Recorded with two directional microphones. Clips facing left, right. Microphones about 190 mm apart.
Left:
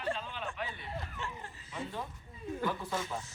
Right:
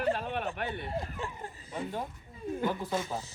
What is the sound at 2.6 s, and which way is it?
Speech, 20° right (ahead or behind).